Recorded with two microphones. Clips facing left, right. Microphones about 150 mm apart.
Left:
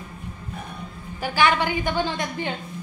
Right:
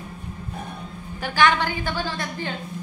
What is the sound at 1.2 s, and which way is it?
A woman's voice, 10° left (ahead or behind).